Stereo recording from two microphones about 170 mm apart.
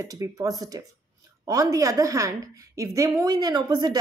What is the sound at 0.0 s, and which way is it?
A woman's voice, 20° right (ahead or behind).